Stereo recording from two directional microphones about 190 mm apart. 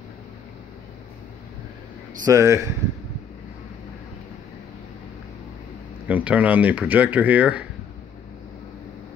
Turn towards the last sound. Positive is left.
turn(degrees=-5)  # may be behind; listen again after turning